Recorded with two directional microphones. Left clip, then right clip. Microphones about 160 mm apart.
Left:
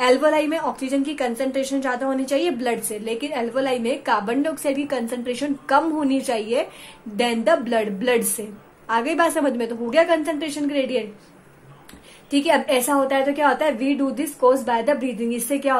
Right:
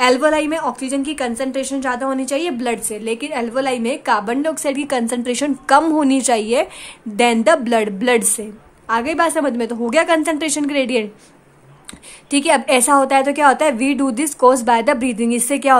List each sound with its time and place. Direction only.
0.0 s a woman's voice: 25° right (ahead or behind)
12.3 s a woman's voice: 35° right (ahead or behind)